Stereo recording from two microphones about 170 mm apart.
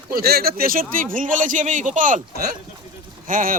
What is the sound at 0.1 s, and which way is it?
Speech, 65° right (ahead or behind).